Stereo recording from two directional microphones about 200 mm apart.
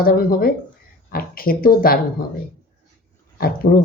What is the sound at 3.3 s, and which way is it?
Speech, 50° left (ahead or behind).